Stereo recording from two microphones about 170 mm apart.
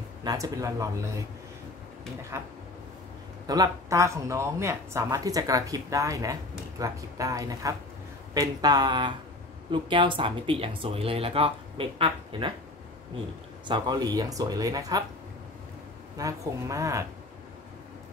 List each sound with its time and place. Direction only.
0.2 s speech: 20° right (ahead or behind)
2.3 s speech: 15° right (ahead or behind)
13.7 s speech: 25° right (ahead or behind)
16.2 s speech: 20° right (ahead or behind)